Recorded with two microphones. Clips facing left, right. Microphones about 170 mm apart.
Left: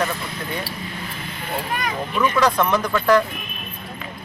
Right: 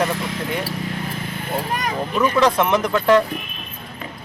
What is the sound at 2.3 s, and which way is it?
Speech, 25° right (ahead or behind).